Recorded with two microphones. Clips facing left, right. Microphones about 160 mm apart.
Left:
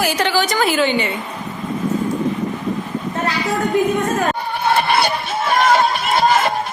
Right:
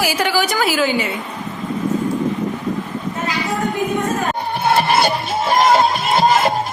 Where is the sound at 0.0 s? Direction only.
10° right (ahead or behind).